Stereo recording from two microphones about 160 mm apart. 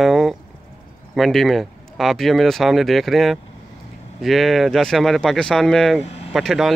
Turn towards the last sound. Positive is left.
turn(degrees=0)  # may be behind; listen again after turning